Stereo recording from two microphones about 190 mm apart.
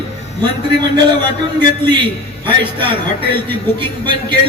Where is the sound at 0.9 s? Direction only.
20° right (ahead or behind).